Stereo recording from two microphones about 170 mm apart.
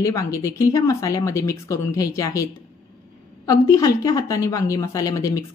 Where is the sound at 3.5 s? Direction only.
20° left (ahead or behind).